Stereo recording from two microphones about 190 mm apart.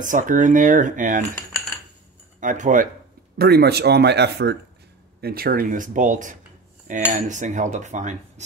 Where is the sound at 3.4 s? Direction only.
55° right (ahead or behind).